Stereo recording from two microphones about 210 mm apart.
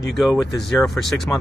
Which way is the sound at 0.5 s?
Centre (ahead or behind).